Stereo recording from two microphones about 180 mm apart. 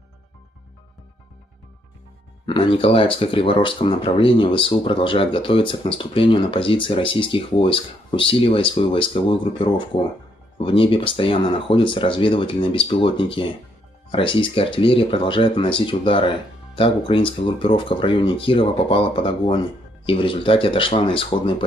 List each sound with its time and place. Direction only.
2.4 s speech: 25° left (ahead or behind)